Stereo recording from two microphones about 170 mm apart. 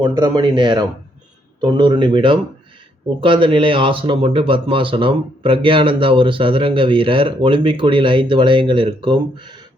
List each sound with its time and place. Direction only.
0.0 s speech: 25° right (ahead or behind)